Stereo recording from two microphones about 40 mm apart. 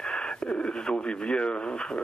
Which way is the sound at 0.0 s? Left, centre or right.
Centre.